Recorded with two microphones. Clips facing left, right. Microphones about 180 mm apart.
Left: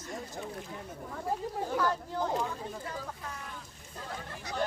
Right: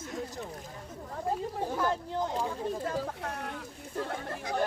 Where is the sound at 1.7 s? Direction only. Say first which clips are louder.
Left 1 dB; 20° right (ahead or behind).